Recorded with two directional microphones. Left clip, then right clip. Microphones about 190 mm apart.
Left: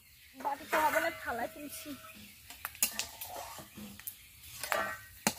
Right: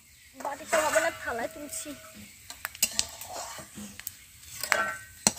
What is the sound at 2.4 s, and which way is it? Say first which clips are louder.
Whispering: right 6 dB; 5° right (ahead or behind).